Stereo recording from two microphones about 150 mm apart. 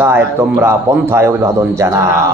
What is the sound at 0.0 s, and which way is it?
Speech, 15° right (ahead or behind).